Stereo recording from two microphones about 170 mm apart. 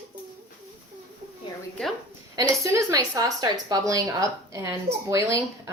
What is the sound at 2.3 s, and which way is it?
Speech, 20° right (ahead or behind).